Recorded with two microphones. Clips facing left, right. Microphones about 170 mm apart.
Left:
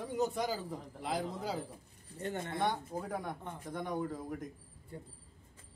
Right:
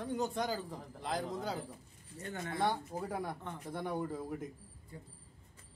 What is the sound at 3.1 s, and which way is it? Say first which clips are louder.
Speech: right 1 dB; 5° right (ahead or behind).